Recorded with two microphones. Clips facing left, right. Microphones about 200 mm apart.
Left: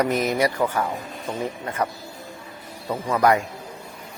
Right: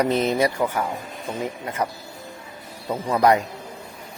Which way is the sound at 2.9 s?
15° right (ahead or behind).